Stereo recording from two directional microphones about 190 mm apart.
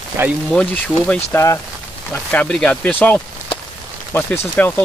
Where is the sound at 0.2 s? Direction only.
15° right (ahead or behind).